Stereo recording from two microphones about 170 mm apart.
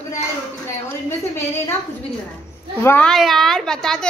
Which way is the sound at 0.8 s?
15° left (ahead or behind).